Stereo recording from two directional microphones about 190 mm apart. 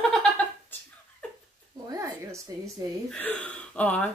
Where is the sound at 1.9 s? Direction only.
15° right (ahead or behind).